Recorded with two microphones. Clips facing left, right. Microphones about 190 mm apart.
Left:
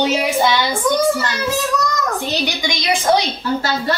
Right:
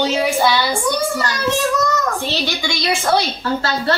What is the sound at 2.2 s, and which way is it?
A woman's voice, 15° left (ahead or behind).